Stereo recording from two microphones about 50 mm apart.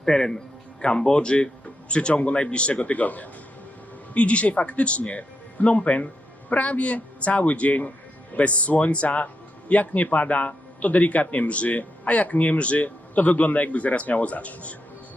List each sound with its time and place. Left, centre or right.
0.0 s speech: centre; by 14.8 s left